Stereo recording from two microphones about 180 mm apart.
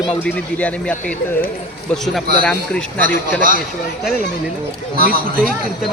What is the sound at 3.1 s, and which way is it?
Speech, 50° right (ahead or behind).